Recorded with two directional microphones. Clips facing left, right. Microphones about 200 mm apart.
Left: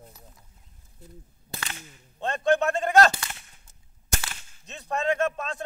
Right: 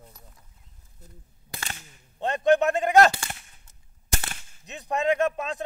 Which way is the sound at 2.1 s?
15° right (ahead or behind).